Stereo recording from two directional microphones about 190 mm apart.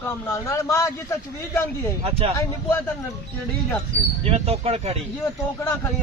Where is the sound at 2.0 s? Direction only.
30° right (ahead or behind).